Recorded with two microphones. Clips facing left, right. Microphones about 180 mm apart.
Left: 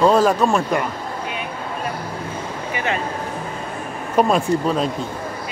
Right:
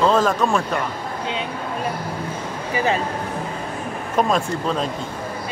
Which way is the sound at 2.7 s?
35° right (ahead or behind).